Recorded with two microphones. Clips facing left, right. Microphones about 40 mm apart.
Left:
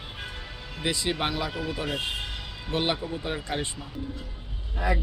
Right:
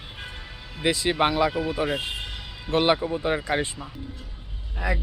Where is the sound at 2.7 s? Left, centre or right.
Right.